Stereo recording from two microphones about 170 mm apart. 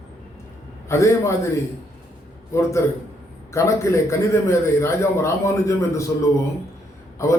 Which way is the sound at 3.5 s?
15° left (ahead or behind).